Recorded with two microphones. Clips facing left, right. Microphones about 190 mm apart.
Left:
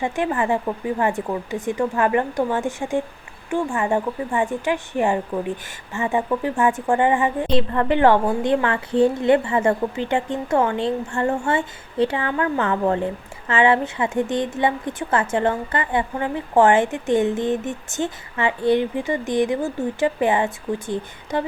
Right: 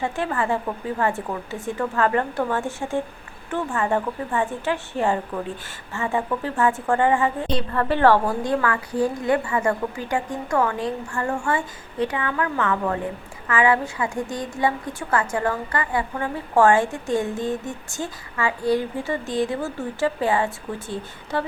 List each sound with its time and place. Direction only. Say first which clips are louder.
0.0 s a woman's voice: left 3 dB; 15° left (ahead or behind)